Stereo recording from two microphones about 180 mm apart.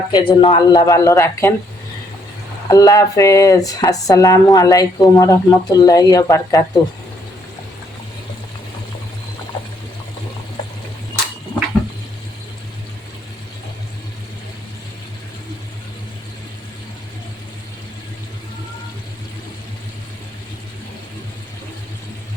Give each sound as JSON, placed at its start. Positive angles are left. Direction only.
{"t": 0.1, "sound": "speech", "side_deg": 25}
{"t": 2.6, "sound": "speech", "side_deg": 20}